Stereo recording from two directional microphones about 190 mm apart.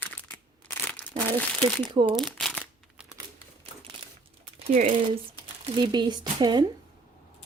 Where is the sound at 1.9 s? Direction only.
25° right (ahead or behind).